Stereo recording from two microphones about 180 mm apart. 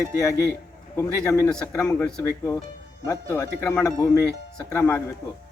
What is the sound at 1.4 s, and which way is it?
Speech, 5° left (ahead or behind).